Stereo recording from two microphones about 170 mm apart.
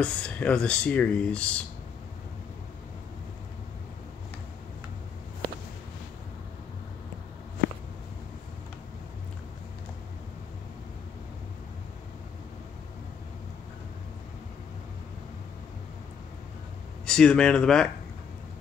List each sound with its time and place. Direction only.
0.0 s speech: 5° left (ahead or behind)
17.0 s speech: 5° left (ahead or behind)